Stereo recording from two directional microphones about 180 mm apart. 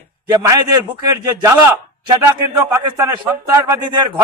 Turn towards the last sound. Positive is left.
turn(degrees=-25)  # may be behind; listen again after turning